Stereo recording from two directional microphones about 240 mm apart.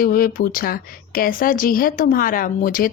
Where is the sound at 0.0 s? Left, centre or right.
Left.